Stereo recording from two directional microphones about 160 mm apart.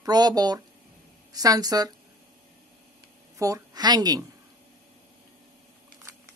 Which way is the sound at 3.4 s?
20° right (ahead or behind).